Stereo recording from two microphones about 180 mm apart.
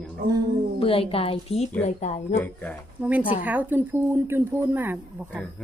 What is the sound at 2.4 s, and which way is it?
Speech, 10° left (ahead or behind).